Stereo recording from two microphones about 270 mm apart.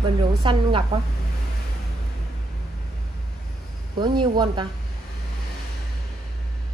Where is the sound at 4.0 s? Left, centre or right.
Centre.